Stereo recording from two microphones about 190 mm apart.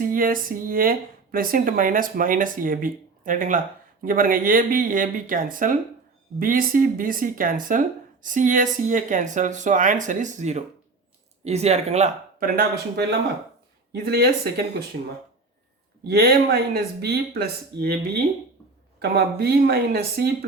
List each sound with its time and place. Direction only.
0.0 s speech: 45° right (ahead or behind)
12.4 s speech: 50° right (ahead or behind)
16.0 s speech: 55° right (ahead or behind)
18.9 s speech: 60° right (ahead or behind)